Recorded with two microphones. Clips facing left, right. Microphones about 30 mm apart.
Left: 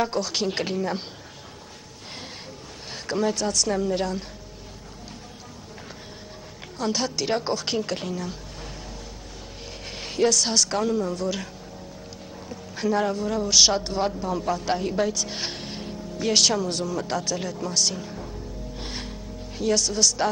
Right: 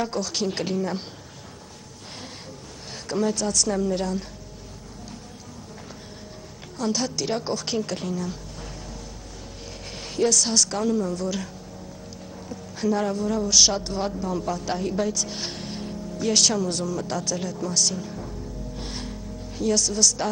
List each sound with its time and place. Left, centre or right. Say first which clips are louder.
0.0 s speech: left 1 dB; centre
3.1 s speech: even; centre
6.8 s a woman's voice: even; centre
9.9 s speech: left 1 dB; centre
12.4 s speech: right 1 dB; centre
18.8 s music: even; centre
19.6 s speech: even; centre